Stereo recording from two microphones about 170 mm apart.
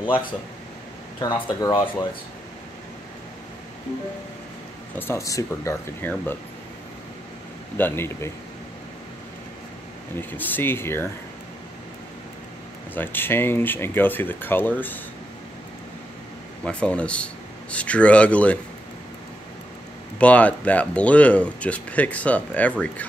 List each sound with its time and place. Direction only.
0.0 s speech: 30° left (ahead or behind)
1.7 s speech: 25° left (ahead or behind)
4.9 s speech: 15° left (ahead or behind)
7.7 s speech: 10° left (ahead or behind)
10.1 s speech: 10° left (ahead or behind)
12.9 s speech: 10° left (ahead or behind)
16.6 s speech: 5° left (ahead or behind)
20.2 s speech: 10° left (ahead or behind)